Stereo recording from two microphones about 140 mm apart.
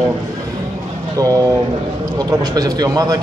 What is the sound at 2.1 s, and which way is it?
Speech, 30° right (ahead or behind).